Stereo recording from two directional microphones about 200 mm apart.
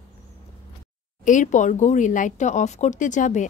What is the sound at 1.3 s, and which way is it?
Speech, 40° left (ahead or behind).